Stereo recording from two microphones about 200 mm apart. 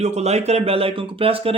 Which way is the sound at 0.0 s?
30° right (ahead or behind).